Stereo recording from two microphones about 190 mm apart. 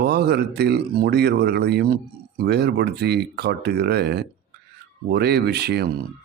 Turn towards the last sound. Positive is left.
turn(degrees=-60)  # may be behind; listen again after turning